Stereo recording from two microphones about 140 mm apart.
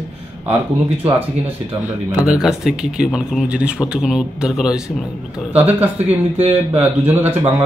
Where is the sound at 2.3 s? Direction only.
Centre (ahead or behind).